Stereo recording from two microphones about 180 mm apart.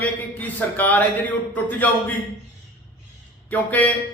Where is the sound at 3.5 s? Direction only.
10° left (ahead or behind).